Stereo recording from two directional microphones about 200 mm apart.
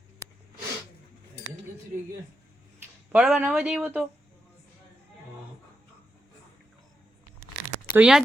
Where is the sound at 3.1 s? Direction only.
5° right (ahead or behind).